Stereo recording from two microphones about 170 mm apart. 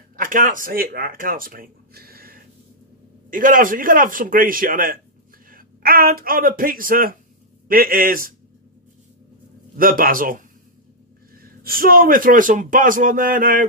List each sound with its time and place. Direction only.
0.1 s a man's voice: 55° right (ahead or behind)
9.8 s a man's voice: 55° right (ahead or behind)